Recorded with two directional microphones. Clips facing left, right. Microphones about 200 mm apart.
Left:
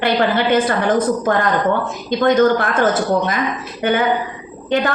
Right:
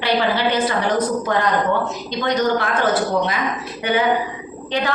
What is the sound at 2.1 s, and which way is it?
A woman's voice, 50° left (ahead or behind).